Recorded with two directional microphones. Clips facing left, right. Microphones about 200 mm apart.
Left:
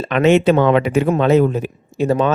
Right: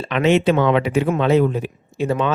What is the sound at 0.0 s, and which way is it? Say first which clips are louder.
A man's voice: left 3 dB; 45° left (ahead or behind).